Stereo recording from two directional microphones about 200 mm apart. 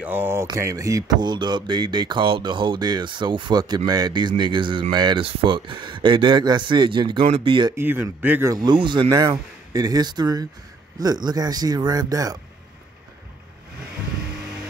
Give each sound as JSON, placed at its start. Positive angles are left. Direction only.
{"t": 0.0, "sound": "speech", "side_deg": -10}
{"t": 7.7, "sound": "speech", "side_deg": -10}